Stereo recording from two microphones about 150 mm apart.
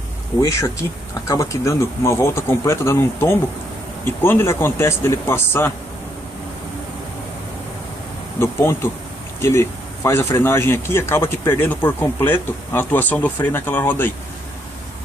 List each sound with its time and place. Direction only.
0.4 s speech: 20° left (ahead or behind)
8.4 s speech: 15° left (ahead or behind)